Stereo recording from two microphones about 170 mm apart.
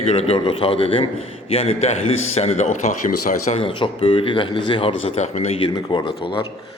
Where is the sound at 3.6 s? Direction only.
30° left (ahead or behind).